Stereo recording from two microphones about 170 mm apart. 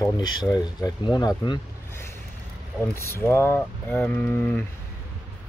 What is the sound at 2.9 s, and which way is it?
Speech, 15° left (ahead or behind).